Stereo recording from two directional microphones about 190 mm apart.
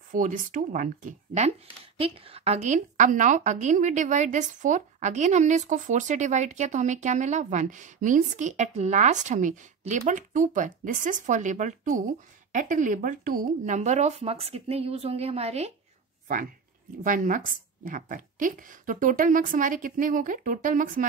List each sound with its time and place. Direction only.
0.1 s a woman's voice: 45° right (ahead or behind)
17.0 s a woman's voice: 45° right (ahead or behind)